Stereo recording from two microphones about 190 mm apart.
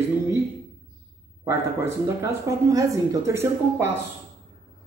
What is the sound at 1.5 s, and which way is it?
Speech, 15° right (ahead or behind).